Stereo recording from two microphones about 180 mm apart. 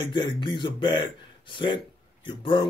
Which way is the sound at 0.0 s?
25° left (ahead or behind).